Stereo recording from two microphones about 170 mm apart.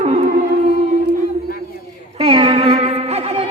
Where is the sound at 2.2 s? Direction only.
30° right (ahead or behind).